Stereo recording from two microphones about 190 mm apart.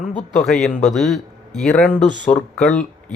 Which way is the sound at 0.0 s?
40° left (ahead or behind).